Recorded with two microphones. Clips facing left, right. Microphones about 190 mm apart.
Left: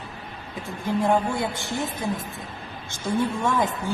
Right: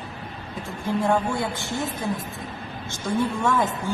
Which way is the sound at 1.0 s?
15° left (ahead or behind).